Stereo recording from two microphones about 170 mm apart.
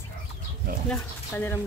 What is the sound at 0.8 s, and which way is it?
Speech, 10° left (ahead or behind).